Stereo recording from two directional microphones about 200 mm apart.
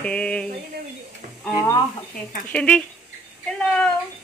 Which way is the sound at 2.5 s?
5° left (ahead or behind).